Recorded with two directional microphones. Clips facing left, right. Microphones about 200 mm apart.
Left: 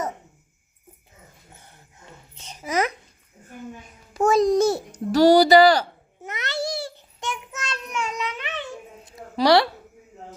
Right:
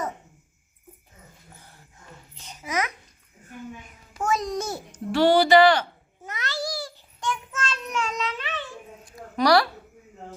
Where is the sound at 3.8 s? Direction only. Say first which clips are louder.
Left 7 dB; 35° left (ahead or behind).